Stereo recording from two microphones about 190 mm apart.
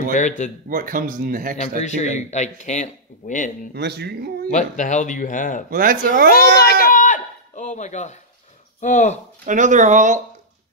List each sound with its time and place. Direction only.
0.1 s speech: 40° left (ahead or behind)
0.7 s speech: 45° right (ahead or behind)
1.8 s speech: 35° left (ahead or behind)
3.7 s speech: 60° right (ahead or behind)
4.5 s speech: 40° left (ahead or behind)
5.7 s speech: 50° right (ahead or behind)
6.5 s a sound: 55° left (ahead or behind); by 8.1 s 40° left (ahead or behind)
8.8 s speech: 40° left (ahead or behind)
9.5 s speech: 40° right (ahead or behind)